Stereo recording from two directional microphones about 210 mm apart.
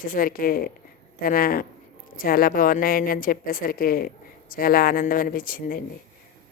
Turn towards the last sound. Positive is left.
turn(degrees=40)  # may be behind; listen again after turning